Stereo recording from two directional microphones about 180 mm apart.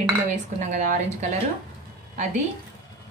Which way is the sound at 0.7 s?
45° right (ahead or behind).